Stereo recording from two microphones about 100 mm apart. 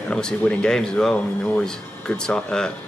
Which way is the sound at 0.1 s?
10° left (ahead or behind).